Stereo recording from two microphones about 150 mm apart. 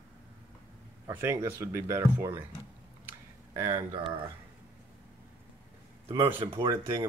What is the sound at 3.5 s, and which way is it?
Speech, 20° right (ahead or behind).